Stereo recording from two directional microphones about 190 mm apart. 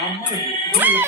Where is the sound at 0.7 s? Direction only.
10° right (ahead or behind).